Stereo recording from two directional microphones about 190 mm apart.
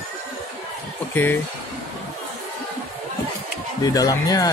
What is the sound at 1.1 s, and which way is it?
Speech, 10° left (ahead or behind).